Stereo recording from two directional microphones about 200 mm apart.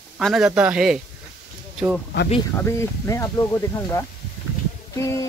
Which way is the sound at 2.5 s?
15° left (ahead or behind).